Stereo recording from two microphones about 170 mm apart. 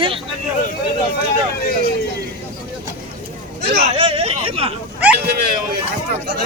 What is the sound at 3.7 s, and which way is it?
Speech, 40° right (ahead or behind).